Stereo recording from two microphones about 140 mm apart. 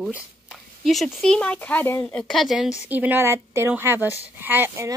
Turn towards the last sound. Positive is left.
turn(degrees=-15)  # may be behind; listen again after turning